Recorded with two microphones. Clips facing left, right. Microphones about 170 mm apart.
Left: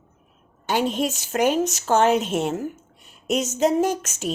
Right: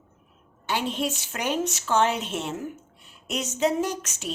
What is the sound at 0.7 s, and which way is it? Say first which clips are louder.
A woman's voice: left 5 dB; 45° left (ahead or behind).